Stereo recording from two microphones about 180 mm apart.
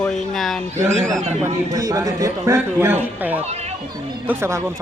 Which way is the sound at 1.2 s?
40° right (ahead or behind).